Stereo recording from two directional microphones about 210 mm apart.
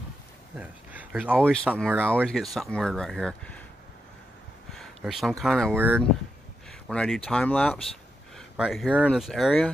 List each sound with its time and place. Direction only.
0.6 s speech: 5° right (ahead or behind)
1.4 s speech: 5° left (ahead or behind)
1.7 s speech: 5° right (ahead or behind)
4.7 s speech: centre (ahead or behind)
6.9 s speech: 5° left (ahead or behind)